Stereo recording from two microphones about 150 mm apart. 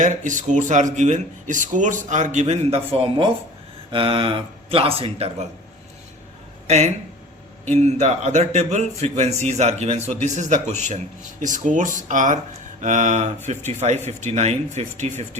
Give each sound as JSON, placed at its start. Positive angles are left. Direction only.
{"t": 0.0, "sound": "speech", "side_deg": -55}
{"t": 6.7, "sound": "speech", "side_deg": -50}